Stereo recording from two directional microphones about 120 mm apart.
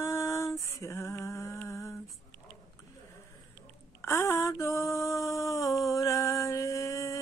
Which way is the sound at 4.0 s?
20° left (ahead or behind).